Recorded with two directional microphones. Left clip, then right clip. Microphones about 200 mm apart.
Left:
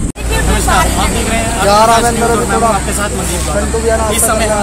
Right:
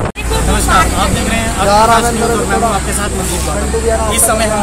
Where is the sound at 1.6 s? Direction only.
50° left (ahead or behind).